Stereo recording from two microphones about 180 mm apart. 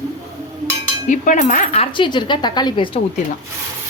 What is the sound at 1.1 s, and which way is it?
Speech, 45° left (ahead or behind).